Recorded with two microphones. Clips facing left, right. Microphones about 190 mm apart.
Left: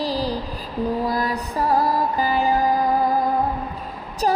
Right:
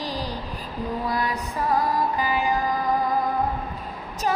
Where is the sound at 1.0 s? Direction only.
40° left (ahead or behind).